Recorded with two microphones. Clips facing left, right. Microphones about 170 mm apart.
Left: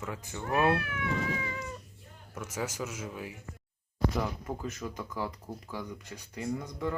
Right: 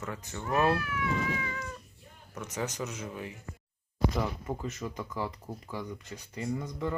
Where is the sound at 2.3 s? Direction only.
5° left (ahead or behind).